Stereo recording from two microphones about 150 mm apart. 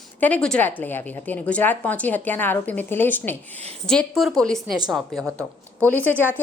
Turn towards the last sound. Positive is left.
turn(degrees=10)  # may be behind; listen again after turning